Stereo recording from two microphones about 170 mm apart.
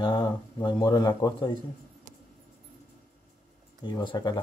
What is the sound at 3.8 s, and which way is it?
Speech, 25° left (ahead or behind).